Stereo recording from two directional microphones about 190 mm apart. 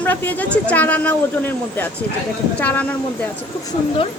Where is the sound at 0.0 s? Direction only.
10° left (ahead or behind).